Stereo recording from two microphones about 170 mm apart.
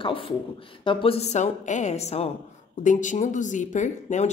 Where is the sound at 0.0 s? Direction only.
30° left (ahead or behind).